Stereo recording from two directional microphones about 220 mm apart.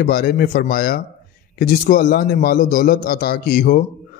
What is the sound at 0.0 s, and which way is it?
A man's voice, 45° left (ahead or behind).